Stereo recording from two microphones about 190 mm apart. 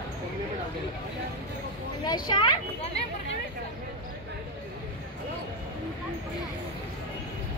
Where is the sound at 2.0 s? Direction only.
25° left (ahead or behind).